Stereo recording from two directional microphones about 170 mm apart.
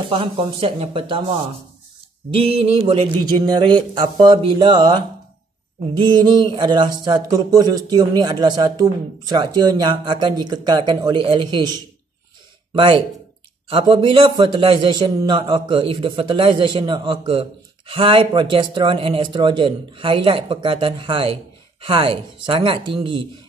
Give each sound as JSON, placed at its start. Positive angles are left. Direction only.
{"t": 0.1, "sound": "a man's voice", "side_deg": -30}
{"t": 6.0, "sound": "a man's voice", "side_deg": -25}